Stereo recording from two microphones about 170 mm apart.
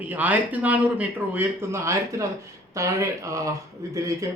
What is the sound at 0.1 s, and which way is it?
Speech, 10° right (ahead or behind).